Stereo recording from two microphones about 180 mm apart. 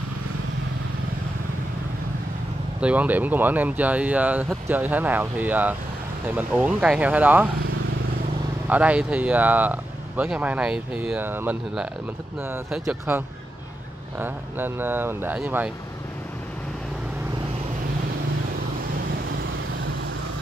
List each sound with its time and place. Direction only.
2.8 s speech: 10° right (ahead or behind)
8.6 s speech: 10° right (ahead or behind)
13.1 s speech: 10° right (ahead or behind)